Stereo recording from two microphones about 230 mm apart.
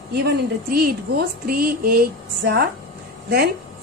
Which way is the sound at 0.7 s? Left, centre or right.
Right.